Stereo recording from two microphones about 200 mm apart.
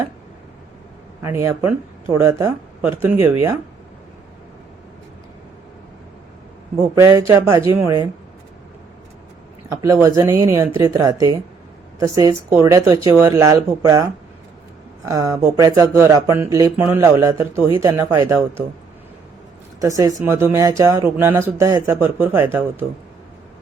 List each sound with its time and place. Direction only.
1.2 s speech: 15° right (ahead or behind)
6.8 s speech: 15° right (ahead or behind)
9.8 s speech: 15° right (ahead or behind)
15.0 s speech: 15° right (ahead or behind)
19.8 s speech: 15° right (ahead or behind)